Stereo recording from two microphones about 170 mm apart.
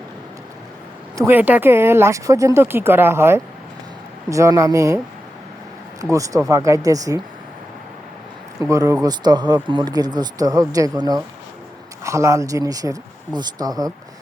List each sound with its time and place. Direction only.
1.1 s speech: 15° right (ahead or behind)
6.0 s speech: 20° right (ahead or behind)
8.7 s speech: 20° right (ahead or behind)